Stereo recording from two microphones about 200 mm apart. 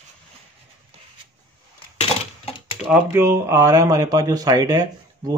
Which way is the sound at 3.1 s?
15° right (ahead or behind).